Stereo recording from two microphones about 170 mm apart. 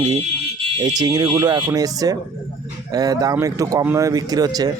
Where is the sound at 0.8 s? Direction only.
25° right (ahead or behind).